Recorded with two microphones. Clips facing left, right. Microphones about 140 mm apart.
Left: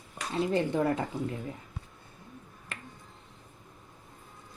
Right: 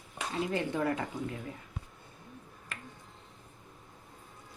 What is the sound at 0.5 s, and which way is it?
Speech, 25° left (ahead or behind).